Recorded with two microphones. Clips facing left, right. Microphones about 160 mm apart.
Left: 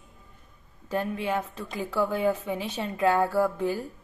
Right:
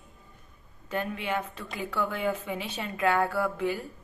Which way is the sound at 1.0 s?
30° left (ahead or behind).